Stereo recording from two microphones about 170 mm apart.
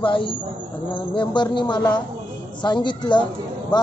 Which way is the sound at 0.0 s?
30° left (ahead or behind).